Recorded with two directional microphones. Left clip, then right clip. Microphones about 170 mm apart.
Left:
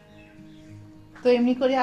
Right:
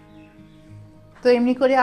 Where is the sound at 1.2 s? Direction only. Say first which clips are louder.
Right 4 dB; 30° right (ahead or behind).